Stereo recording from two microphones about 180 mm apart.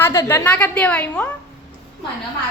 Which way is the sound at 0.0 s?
15° left (ahead or behind).